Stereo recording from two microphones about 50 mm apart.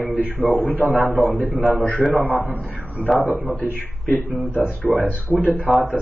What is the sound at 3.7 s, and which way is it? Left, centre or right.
Speech, left.